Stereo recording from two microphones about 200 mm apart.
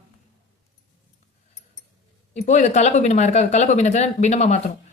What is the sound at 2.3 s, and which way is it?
Speech, 35° left (ahead or behind).